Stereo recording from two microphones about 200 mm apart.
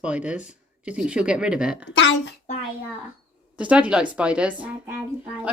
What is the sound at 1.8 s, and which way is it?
Speech, 65° left (ahead or behind).